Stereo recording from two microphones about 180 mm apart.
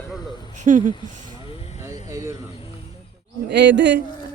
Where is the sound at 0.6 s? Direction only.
45° right (ahead or behind).